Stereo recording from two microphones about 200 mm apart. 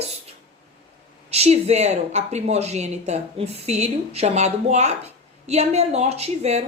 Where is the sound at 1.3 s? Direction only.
30° right (ahead or behind).